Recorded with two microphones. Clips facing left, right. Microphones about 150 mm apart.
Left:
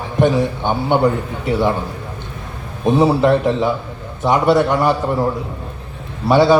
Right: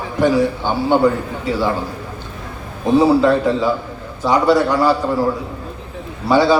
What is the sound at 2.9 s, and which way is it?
A man's voice, 20° left (ahead or behind).